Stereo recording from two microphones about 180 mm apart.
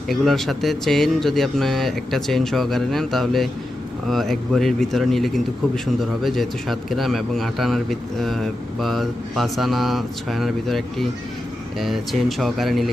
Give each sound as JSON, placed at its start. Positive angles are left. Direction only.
{"t": 0.1, "sound": "a man's voice", "side_deg": 0}
{"t": 12.4, "sound": "a man's voice", "side_deg": 0}